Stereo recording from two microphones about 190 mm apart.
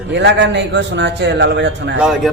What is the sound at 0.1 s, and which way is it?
A man's voice, 65° right (ahead or behind).